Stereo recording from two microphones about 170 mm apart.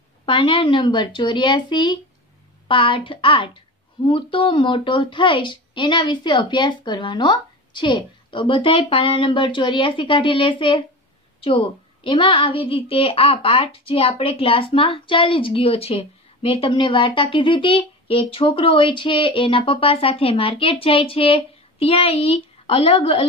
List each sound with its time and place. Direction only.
0.2 s a woman's voice: 30° left (ahead or behind)